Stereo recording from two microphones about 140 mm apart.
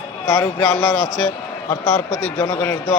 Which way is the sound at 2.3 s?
25° left (ahead or behind).